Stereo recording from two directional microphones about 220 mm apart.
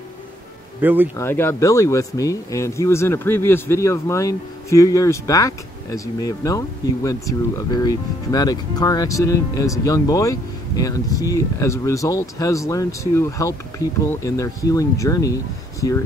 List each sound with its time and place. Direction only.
0.7 s speech: 10° right (ahead or behind)
1.1 s speech: 10° left (ahead or behind)